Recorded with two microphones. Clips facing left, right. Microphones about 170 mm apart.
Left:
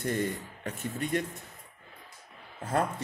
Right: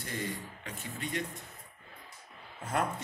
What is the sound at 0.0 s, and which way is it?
Speech, 50° left (ahead or behind).